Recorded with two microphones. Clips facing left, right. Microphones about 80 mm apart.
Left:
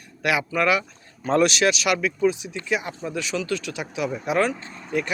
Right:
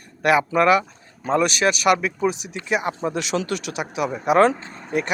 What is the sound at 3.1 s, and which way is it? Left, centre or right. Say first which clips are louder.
Speech: right 2 dB; right.